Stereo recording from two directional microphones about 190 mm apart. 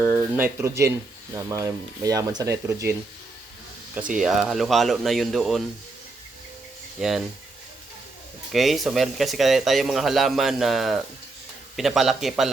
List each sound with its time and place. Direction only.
0.0 s speech: 10° right (ahead or behind)
4.1 s speech: centre (ahead or behind)
7.0 s speech: 5° right (ahead or behind)
8.5 s speech: centre (ahead or behind)